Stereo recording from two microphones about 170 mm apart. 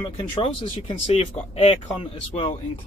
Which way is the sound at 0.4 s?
35° left (ahead or behind).